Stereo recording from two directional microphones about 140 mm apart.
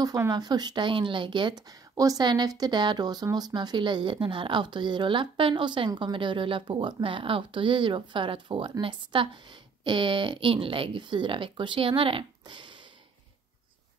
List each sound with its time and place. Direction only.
0.0 s speech: 25° right (ahead or behind)